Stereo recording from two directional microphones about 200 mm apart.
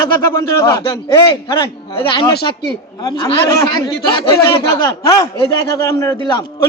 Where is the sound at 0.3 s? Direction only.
15° left (ahead or behind).